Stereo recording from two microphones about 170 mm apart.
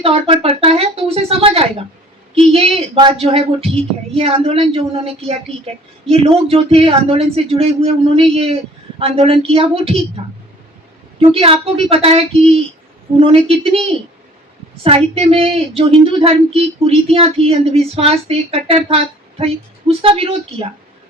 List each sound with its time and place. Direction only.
0.0 s speech: 35° right (ahead or behind)
11.2 s speech: 35° right (ahead or behind)
14.8 s speech: 35° right (ahead or behind)
20.0 s speech: 35° right (ahead or behind)